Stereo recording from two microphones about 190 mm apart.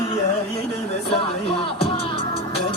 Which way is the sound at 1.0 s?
30° left (ahead or behind).